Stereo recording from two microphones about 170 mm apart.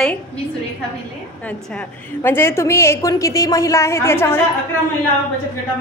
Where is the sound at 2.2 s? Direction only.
15° left (ahead or behind).